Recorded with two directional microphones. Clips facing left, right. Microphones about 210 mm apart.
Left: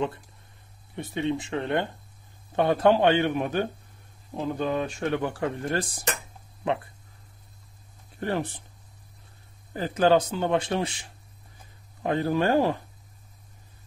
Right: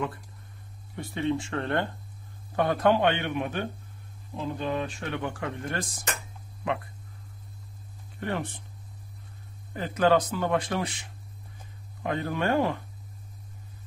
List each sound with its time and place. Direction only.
0.9 s speech: 20° left (ahead or behind)
8.2 s speech: 35° left (ahead or behind)
9.8 s speech: 30° left (ahead or behind)